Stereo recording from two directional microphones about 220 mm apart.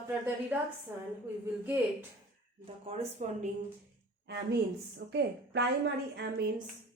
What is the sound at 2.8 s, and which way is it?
Speech, 25° right (ahead or behind).